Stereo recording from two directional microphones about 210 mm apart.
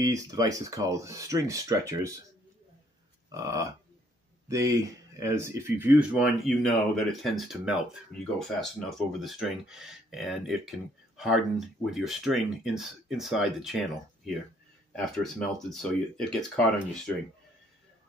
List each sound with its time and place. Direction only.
0.0 s speech: 15° right (ahead or behind)
3.3 s speech: 15° right (ahead or behind); by 17.1 s 5° left (ahead or behind)